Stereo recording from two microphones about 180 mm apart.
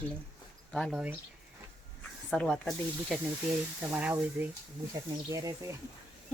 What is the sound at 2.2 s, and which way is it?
Speech, 5° left (ahead or behind).